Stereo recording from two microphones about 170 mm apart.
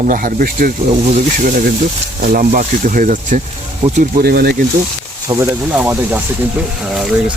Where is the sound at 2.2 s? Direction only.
55° right (ahead or behind).